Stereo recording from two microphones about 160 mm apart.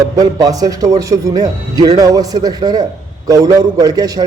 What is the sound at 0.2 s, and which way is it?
A man's voice, 20° right (ahead or behind).